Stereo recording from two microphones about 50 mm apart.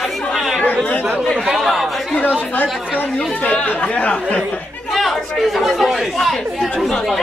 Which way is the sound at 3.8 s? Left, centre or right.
Left.